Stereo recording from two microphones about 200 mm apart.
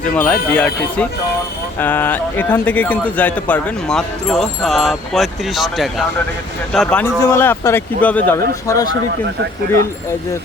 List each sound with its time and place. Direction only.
0.1 s a man's voice: 10° left (ahead or behind)